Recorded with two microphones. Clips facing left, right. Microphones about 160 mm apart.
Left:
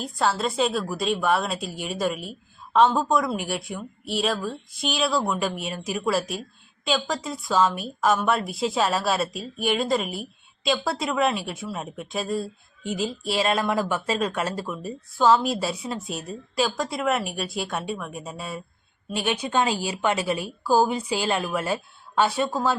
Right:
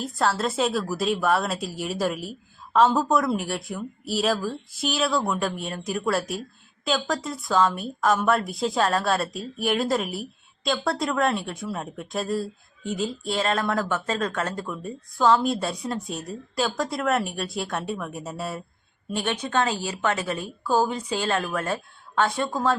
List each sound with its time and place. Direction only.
0.0 s speech: centre (ahead or behind)
19.1 s a woman's voice: 10° left (ahead or behind)